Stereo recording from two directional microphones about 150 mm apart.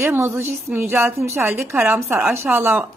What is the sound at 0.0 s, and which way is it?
Speech, 15° right (ahead or behind).